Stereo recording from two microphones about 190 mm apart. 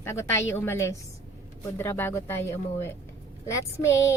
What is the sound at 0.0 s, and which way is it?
A woman's voice, 15° left (ahead or behind).